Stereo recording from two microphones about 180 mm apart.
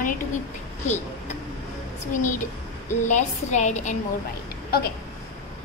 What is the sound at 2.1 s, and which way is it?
A woman's voice, 45° left (ahead or behind).